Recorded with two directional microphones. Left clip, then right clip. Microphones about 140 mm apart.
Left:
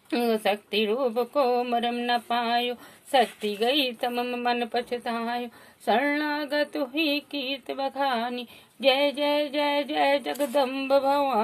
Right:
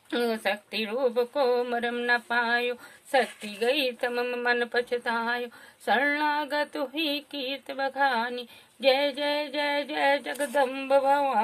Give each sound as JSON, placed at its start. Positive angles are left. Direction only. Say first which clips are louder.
{"t": 0.1, "sound": "speech", "louder": "left 3 dB", "side_deg": 20}